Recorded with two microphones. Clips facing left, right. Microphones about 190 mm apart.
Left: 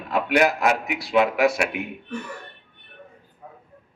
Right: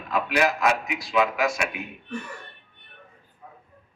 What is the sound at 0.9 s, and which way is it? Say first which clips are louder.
Speech: left 3 dB; 65° left (ahead or behind).